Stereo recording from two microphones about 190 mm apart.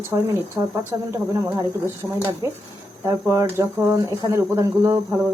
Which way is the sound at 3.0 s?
15° right (ahead or behind).